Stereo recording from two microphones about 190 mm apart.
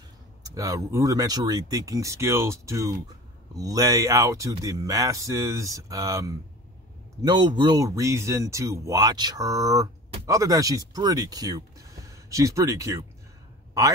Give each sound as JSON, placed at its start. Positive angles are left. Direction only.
{"t": 0.6, "sound": "speech", "side_deg": -15}